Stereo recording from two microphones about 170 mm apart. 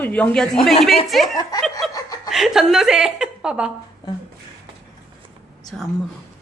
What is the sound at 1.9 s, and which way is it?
Chuckle, 20° left (ahead or behind).